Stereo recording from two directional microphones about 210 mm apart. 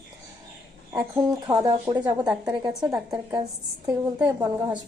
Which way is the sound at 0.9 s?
10° right (ahead or behind).